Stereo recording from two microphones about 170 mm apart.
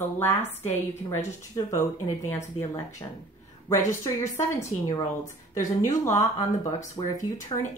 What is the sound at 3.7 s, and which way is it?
Speech, 20° left (ahead or behind).